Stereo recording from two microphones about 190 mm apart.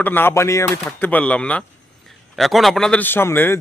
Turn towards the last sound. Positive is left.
turn(degrees=10)  # may be behind; listen again after turning